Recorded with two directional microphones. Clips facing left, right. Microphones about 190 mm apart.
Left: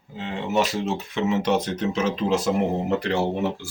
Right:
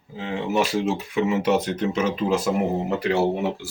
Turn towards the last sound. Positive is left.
turn(degrees=-5)  # may be behind; listen again after turning